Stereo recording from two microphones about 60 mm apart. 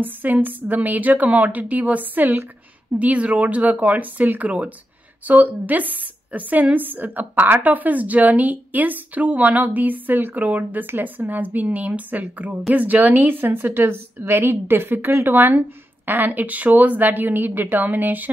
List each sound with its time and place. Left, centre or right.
0.0 s a woman's voice: right